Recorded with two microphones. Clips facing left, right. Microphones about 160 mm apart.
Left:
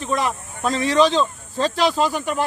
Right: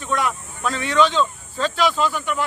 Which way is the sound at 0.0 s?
35° left (ahead or behind).